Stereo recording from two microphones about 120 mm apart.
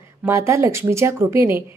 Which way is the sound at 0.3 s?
20° right (ahead or behind).